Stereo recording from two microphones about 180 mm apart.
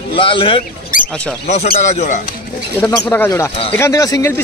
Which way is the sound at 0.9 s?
50° left (ahead or behind).